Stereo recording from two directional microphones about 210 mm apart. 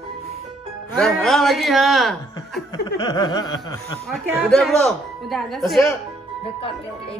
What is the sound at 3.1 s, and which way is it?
Snicker, 20° left (ahead or behind).